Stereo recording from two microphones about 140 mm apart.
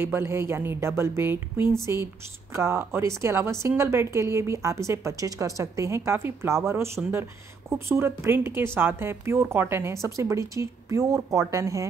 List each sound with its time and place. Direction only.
0.0 s a woman's voice: 15° right (ahead or behind)